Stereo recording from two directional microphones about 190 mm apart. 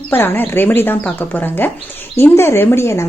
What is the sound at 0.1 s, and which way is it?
Speech, 10° left (ahead or behind).